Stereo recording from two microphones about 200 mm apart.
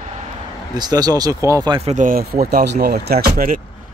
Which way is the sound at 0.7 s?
20° right (ahead or behind).